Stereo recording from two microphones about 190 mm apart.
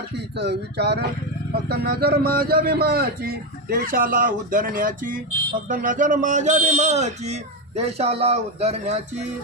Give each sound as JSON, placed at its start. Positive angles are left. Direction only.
{"t": 0.3, "sound": "a man's voice", "side_deg": -60}